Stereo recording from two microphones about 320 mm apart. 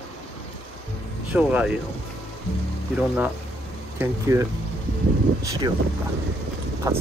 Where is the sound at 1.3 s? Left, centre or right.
Centre.